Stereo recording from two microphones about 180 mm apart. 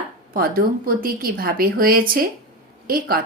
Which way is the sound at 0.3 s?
55° right (ahead or behind).